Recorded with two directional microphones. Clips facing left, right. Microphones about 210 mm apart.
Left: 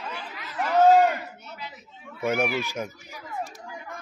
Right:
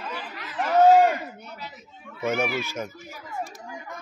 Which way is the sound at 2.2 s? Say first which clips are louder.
Left 1 dB; 10° left (ahead or behind).